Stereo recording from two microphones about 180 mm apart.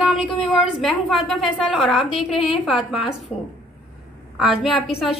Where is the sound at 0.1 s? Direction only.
5° right (ahead or behind).